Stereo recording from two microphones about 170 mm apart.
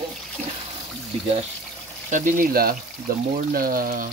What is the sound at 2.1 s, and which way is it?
Speech, 50° right (ahead or behind).